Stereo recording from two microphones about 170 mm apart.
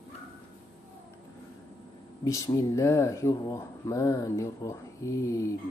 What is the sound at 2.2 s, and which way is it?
Speech, 20° left (ahead or behind).